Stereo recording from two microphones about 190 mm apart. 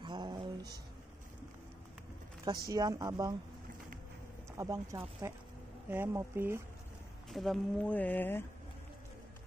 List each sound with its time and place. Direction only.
0.0 s music: 25° right (ahead or behind)
2.7 s a woman's voice: 20° right (ahead or behind)
4.6 s speech: 15° right (ahead or behind)
7.2 s speech: centre (ahead or behind)